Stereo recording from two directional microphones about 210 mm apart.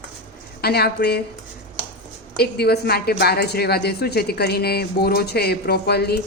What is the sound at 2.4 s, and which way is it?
A woman's voice, 50° left (ahead or behind).